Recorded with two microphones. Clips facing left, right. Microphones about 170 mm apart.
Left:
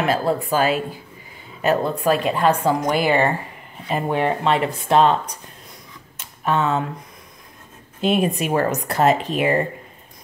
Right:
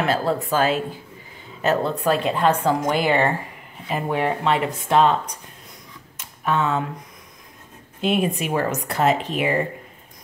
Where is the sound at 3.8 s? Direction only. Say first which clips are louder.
Left 2 dB; 30° left (ahead or behind).